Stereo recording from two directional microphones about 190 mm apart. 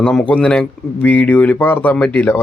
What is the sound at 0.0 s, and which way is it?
Speech, 5° left (ahead or behind).